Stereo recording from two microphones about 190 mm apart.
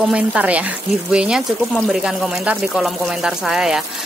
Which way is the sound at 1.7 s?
5° right (ahead or behind).